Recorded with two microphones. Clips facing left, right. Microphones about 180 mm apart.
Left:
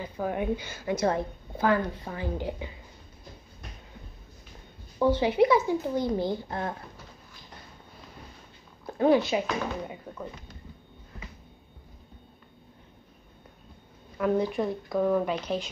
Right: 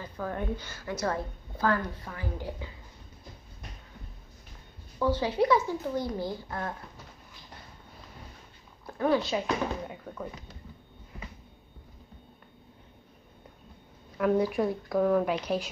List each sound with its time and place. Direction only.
0.0 s a woman's voice: 15° left (ahead or behind)
4.9 s speech: 20° left (ahead or behind)
8.9 s a woman's voice: 20° left (ahead or behind)
9.8 s speech: centre (ahead or behind)
14.1 s speech: centre (ahead or behind)